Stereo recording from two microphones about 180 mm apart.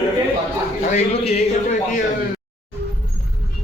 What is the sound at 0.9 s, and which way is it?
Speech, 35° left (ahead or behind).